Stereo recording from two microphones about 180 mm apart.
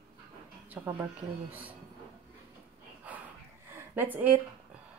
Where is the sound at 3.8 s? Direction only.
10° right (ahead or behind).